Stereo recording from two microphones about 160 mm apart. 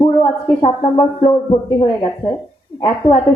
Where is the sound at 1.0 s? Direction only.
25° left (ahead or behind).